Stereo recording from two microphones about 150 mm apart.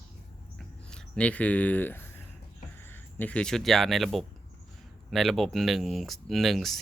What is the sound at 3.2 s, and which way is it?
Speech, 5° left (ahead or behind).